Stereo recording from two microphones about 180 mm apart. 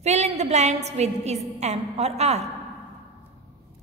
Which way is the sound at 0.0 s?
40° right (ahead or behind).